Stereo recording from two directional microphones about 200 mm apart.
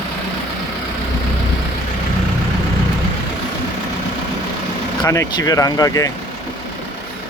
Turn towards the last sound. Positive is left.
turn(degrees=15)  # may be behind; listen again after turning